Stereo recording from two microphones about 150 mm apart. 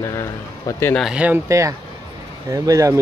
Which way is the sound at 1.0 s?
5° right (ahead or behind).